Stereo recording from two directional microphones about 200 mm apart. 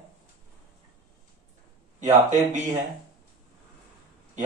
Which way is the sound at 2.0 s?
40° right (ahead or behind).